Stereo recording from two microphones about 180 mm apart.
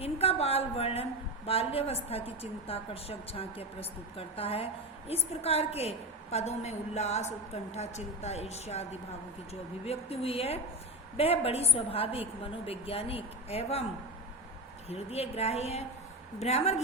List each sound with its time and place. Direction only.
0.0 s a woman's voice: 35° left (ahead or behind)
14.8 s a woman's voice: 35° left (ahead or behind)